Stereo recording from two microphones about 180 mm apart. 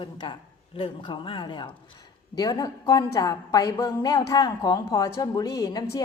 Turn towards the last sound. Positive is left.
turn(degrees=20)  # may be behind; listen again after turning